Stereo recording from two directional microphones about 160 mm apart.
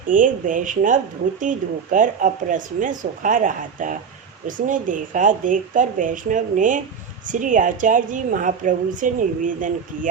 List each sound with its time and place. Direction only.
0.1 s a woman's voice: 55° right (ahead or behind)